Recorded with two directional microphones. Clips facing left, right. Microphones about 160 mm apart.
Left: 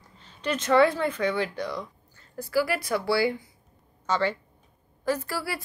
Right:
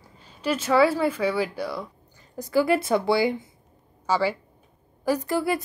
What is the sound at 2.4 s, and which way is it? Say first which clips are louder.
Speech: right 5 dB; 20° right (ahead or behind).